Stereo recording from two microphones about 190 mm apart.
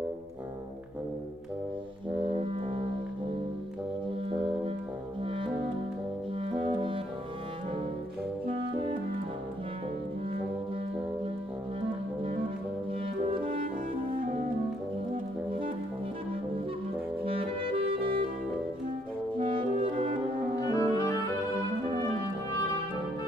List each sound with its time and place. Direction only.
5.2 s music: 30° right (ahead or behind)
8.5 s music: 25° right (ahead or behind)
17.2 s saxophone: 30° right (ahead or behind)
19.3 s brass instrument: 25° right (ahead or behind)
20.6 s music: 20° left (ahead or behind)